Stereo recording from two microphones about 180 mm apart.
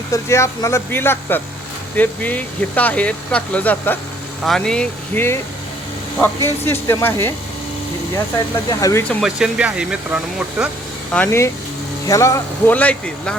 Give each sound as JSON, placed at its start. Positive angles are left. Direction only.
{"t": 0.1, "sound": "speech", "side_deg": 15}
{"t": 8.7, "sound": "speech", "side_deg": 15}
{"t": 9.2, "sound": "speech", "side_deg": -5}
{"t": 11.1, "sound": "speech", "side_deg": 10}